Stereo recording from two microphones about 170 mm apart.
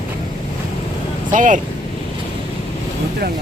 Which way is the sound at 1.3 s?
50° right (ahead or behind).